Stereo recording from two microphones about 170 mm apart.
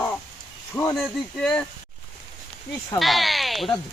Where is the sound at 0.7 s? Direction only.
15° left (ahead or behind).